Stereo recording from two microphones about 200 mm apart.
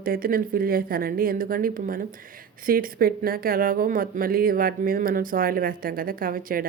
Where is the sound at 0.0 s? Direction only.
45° right (ahead or behind).